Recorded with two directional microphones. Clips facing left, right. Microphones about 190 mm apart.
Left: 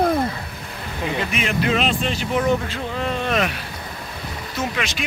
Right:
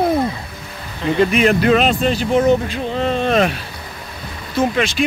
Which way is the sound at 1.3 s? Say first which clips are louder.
Right 7 dB; 45° right (ahead or behind).